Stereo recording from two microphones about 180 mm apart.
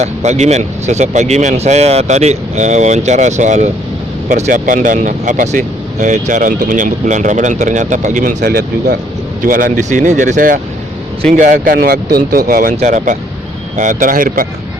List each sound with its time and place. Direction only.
0.0 s speech: 40° right (ahead or behind)
8.4 s speech: 65° right (ahead or behind)
9.4 s speech: 50° right (ahead or behind)